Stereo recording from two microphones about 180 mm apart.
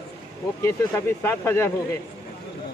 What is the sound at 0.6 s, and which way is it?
Speech, 15° left (ahead or behind).